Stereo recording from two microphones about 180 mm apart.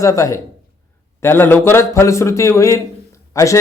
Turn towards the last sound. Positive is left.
turn(degrees=15)  # may be behind; listen again after turning